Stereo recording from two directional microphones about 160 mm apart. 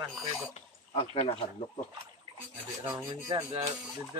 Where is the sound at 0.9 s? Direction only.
35° left (ahead or behind).